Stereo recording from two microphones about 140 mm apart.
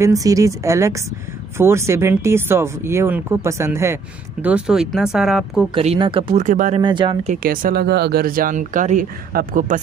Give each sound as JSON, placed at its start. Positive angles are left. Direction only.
{"t": 0.0, "sound": "speech", "side_deg": -25}
{"t": 5.9, "sound": "speech", "side_deg": -35}
{"t": 6.3, "sound": "speech", "side_deg": -65}
{"t": 6.8, "sound": "speech", "side_deg": -35}
{"t": 7.4, "sound": "speech", "side_deg": -90}